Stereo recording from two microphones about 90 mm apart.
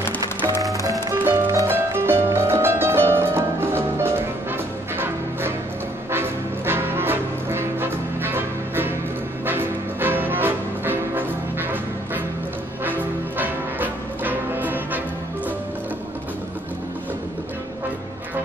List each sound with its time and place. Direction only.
0.7 s music: 35° right (ahead or behind)